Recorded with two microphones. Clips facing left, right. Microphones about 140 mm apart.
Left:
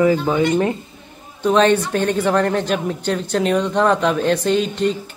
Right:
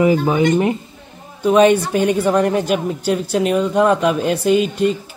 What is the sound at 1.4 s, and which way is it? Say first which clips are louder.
Speech: right 3 dB; 10° right (ahead or behind).